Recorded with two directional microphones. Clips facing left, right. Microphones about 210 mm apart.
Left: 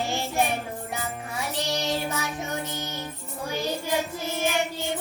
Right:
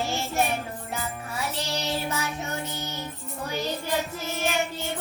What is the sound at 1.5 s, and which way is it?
Child singing, 15° left (ahead or behind).